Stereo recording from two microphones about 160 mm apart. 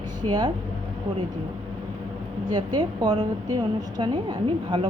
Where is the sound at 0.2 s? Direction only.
35° right (ahead or behind).